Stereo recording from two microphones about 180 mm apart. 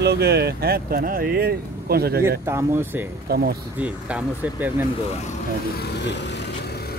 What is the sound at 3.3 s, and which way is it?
Speech, 60° right (ahead or behind).